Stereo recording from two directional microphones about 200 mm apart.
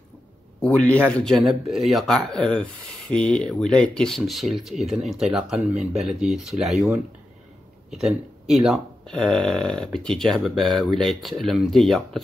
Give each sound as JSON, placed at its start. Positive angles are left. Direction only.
{"t": 0.6, "sound": "speech", "side_deg": 5}
{"t": 8.6, "sound": "speech", "side_deg": 0}